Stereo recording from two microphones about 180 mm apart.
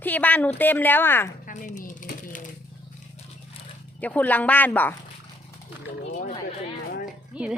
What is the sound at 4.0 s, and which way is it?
Speech, 10° left (ahead or behind).